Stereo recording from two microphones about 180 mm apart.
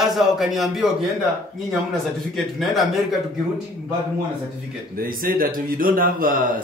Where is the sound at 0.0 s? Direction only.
Centre (ahead or behind).